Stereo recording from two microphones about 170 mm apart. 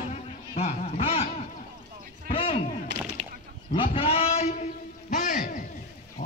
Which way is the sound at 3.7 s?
30° left (ahead or behind).